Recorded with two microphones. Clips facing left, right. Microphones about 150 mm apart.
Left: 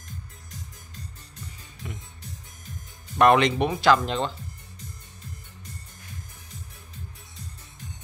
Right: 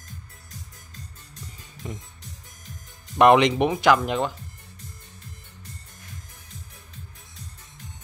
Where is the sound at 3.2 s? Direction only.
20° right (ahead or behind).